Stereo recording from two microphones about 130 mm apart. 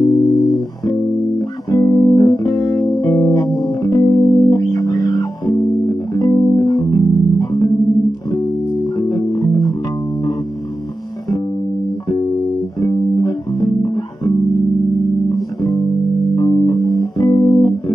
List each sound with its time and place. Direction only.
0.1 s music: centre (ahead or behind)
1.7 s music: 30° left (ahead or behind)
8.9 s music: 30° left (ahead or behind)
12.8 s music: 30° left (ahead or behind)
16.3 s music: 25° left (ahead or behind)